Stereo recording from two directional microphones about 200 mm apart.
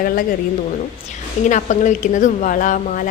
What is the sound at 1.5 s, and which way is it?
A woman's voice, 35° left (ahead or behind).